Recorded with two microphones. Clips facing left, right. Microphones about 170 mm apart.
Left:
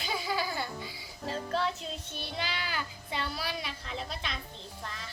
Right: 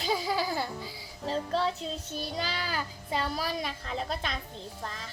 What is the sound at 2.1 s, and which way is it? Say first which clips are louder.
A child's voice: right 3 dB; 40° right (ahead or behind).